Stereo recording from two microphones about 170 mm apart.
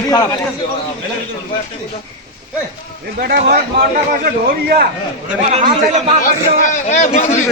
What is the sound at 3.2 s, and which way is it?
A man's voice, 70° right (ahead or behind).